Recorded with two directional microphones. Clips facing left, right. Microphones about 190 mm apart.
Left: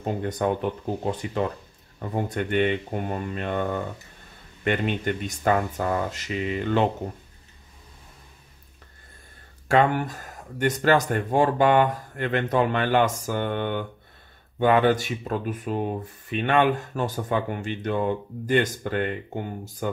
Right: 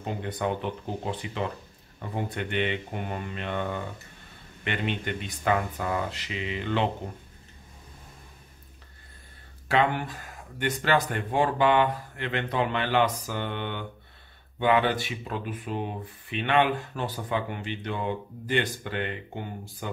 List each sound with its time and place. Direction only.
0.0 s speech: 45° left (ahead or behind)
9.7 s speech: 45° left (ahead or behind)